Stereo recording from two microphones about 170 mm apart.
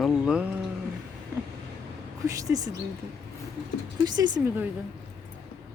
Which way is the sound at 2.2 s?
20° right (ahead or behind).